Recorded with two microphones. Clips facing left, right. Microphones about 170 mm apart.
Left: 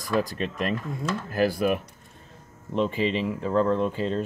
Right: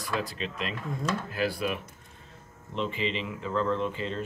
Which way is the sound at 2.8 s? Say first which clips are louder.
Left 6 dB; 45° left (ahead or behind).